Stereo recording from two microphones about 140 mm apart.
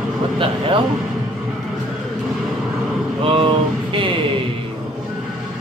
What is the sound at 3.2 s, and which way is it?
Vehicle, 40° right (ahead or behind).